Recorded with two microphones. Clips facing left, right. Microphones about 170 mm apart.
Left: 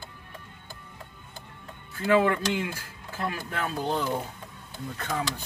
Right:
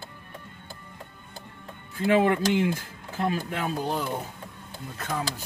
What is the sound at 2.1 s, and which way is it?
Speech, 20° right (ahead or behind).